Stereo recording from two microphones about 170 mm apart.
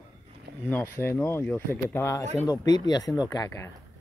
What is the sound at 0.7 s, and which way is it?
Speech, 10° left (ahead or behind).